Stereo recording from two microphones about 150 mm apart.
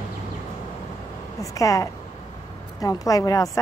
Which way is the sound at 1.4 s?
20° left (ahead or behind).